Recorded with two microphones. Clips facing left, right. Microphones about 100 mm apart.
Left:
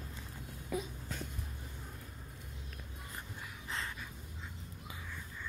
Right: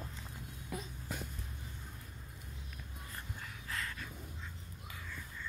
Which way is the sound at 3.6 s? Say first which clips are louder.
Left 1 dB; 20° left (ahead or behind).